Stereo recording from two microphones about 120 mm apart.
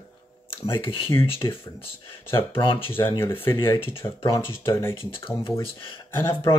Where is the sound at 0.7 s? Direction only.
45° left (ahead or behind).